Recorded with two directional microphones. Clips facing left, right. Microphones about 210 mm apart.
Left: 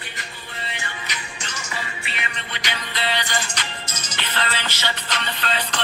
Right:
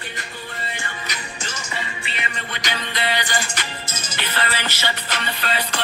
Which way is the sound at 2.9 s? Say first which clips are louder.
Right 1 dB; 15° right (ahead or behind).